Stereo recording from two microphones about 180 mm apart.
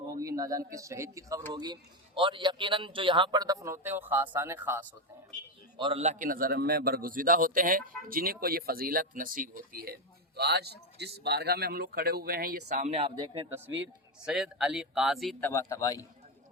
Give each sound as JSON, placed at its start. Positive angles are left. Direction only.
{"t": 0.1, "sound": "a man's voice", "side_deg": -20}
{"t": 5.7, "sound": "a man's voice", "side_deg": -30}
{"t": 14.3, "sound": "speech", "side_deg": -5}
{"t": 15.4, "sound": "a man's voice", "side_deg": 15}